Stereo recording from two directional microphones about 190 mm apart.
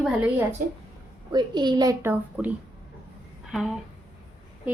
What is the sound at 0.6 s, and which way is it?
Speech, 50° right (ahead or behind).